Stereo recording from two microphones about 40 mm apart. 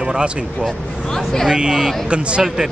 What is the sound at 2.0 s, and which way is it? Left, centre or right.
Speech, right.